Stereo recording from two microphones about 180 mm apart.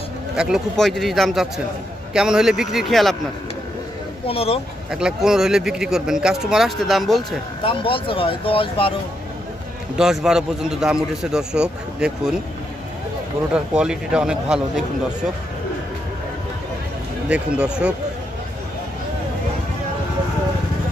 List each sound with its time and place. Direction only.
0.4 s a man's voice: centre (ahead or behind)
4.3 s speech: 35° left (ahead or behind)
4.9 s a man's voice: 5° right (ahead or behind)
7.6 s speech: 30° left (ahead or behind)
9.9 s a man's voice: 5° right (ahead or behind)
13.5 s a man's voice: 5° right (ahead or behind)
17.3 s a man's voice: 5° right (ahead or behind)